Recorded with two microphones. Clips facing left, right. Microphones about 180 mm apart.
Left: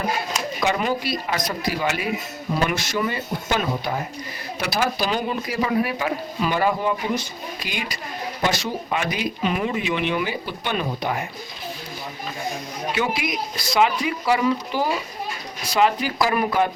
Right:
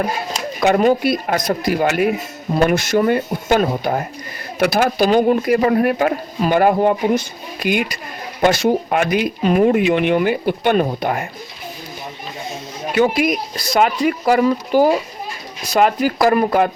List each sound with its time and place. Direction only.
0.6 s speech: 50° right (ahead or behind)
13.0 s speech: 50° right (ahead or behind)